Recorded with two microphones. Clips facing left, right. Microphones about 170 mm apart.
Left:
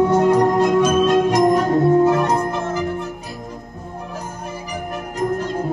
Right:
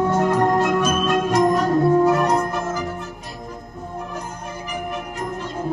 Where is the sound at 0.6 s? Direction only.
20° left (ahead or behind).